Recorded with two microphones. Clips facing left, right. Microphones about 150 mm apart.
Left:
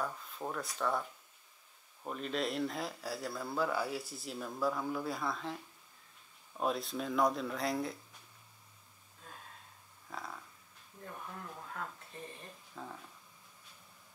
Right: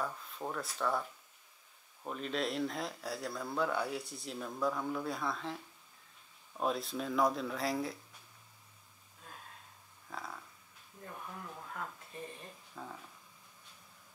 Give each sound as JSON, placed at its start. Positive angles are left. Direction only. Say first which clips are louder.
{"t": 0.0, "sound": "speech", "louder": "even", "side_deg": 0}
{"t": 10.0, "sound": "a sound", "louder": "even", "side_deg": 0}
{"t": 11.0, "sound": "speech", "louder": "even", "side_deg": 0}
{"t": 12.1, "sound": "speech", "louder": "right 3 dB", "side_deg": -15}
{"t": 12.7, "sound": "speech", "louder": "even", "side_deg": 0}